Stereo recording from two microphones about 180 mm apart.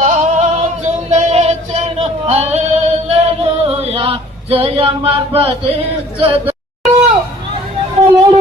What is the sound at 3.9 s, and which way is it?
Male singing, 30° right (ahead or behind).